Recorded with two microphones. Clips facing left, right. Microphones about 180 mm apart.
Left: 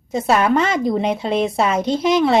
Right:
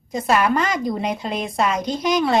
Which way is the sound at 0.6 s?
25° left (ahead or behind).